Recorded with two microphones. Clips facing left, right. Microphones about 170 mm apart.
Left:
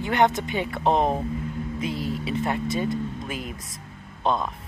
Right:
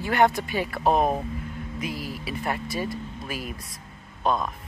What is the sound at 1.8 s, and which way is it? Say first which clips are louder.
Speech: left 4 dB; 25° left (ahead or behind).